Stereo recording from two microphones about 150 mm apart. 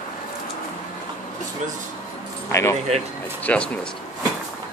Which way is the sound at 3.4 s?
10° left (ahead or behind).